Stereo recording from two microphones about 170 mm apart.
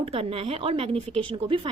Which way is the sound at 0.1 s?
35° right (ahead or behind).